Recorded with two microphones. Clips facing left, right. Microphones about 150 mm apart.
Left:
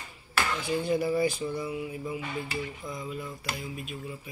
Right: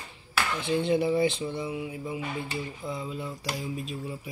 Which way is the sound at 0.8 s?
20° right (ahead or behind).